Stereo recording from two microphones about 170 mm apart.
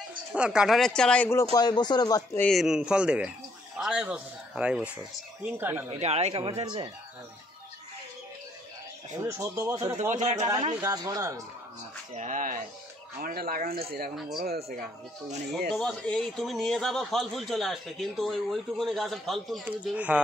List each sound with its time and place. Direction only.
0.3 s speech: 5° right (ahead or behind)
1.5 s speech: 25° left (ahead or behind)
2.4 s speech: centre (ahead or behind)
5.9 s speech: 40° right (ahead or behind)
9.4 s speech: 20° right (ahead or behind)
10.1 s speech: 45° right (ahead or behind)
10.4 s speech: 30° right (ahead or behind)
10.8 s speech: 20° right (ahead or behind)
12.1 s speech: 45° right (ahead or behind)
13.2 s speech: 60° right (ahead or behind)
15.7 s speech: 5° left (ahead or behind)